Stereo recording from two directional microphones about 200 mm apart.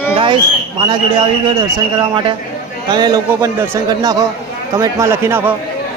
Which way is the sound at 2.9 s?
20° right (ahead or behind).